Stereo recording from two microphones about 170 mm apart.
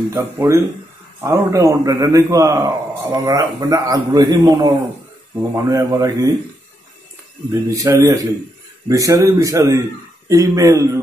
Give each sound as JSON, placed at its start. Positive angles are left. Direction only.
{"t": 0.1, "sound": "a man's voice", "side_deg": -15}
{"t": 7.7, "sound": "a man's voice", "side_deg": -20}